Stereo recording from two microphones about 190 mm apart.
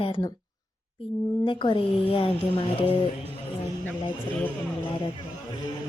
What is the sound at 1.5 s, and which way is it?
A woman's voice, 25° left (ahead or behind).